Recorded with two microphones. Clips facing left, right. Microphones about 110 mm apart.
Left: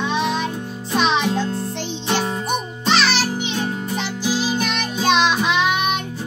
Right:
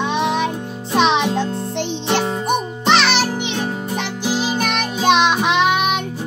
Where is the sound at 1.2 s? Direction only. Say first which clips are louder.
Right 1 dB; 20° right (ahead or behind).